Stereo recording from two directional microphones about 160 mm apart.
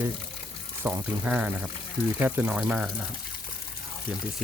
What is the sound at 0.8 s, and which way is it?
Speech, 15° right (ahead or behind).